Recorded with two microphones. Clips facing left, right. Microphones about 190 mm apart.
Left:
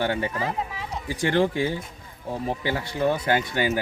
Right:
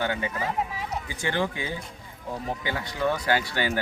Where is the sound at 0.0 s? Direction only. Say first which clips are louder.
Left 3 dB; 30° left (ahead or behind).